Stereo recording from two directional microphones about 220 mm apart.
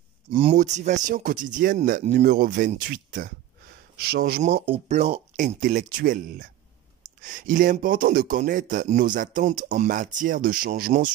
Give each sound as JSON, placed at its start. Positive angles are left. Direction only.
{"t": 0.3, "sound": "speech", "side_deg": -25}